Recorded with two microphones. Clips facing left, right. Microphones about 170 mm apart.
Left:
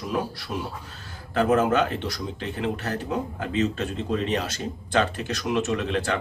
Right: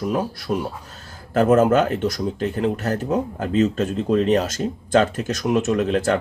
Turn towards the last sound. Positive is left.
turn(degrees=-45)  # may be behind; listen again after turning